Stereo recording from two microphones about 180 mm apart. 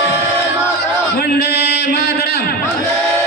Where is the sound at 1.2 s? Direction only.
65° left (ahead or behind).